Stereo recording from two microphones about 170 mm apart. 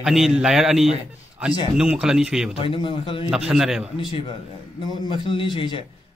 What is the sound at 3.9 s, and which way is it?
A man's voice, 30° left (ahead or behind).